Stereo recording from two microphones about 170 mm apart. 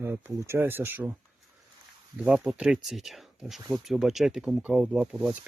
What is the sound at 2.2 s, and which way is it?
Speech, 5° right (ahead or behind).